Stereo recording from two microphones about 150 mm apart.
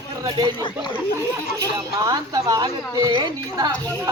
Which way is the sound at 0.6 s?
35° left (ahead or behind).